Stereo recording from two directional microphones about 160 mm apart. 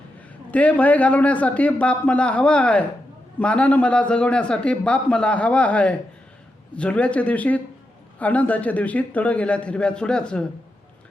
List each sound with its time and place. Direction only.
0.5 s speech: 10° left (ahead or behind)